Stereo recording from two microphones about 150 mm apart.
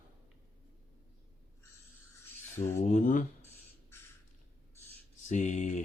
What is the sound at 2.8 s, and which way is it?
Speech, 60° left (ahead or behind).